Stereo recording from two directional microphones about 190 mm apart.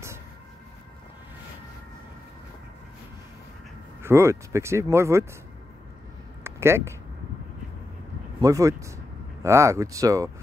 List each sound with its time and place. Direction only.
4.0 s speech: 15° right (ahead or behind)
6.4 s speech: 15° right (ahead or behind)
8.4 s speech: 15° right (ahead or behind)